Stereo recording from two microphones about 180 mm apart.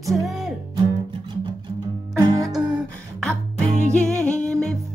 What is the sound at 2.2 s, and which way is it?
Music, 20° right (ahead or behind).